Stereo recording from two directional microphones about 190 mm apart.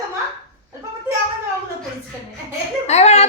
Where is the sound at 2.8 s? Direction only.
35° left (ahead or behind).